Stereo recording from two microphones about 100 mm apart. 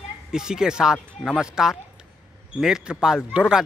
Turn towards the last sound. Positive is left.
turn(degrees=-5)  # may be behind; listen again after turning